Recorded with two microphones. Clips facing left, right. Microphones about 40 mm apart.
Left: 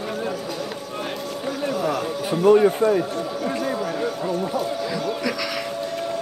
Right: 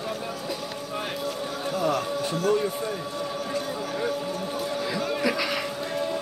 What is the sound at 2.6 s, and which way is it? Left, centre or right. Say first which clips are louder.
Speech: left 11 dB; left.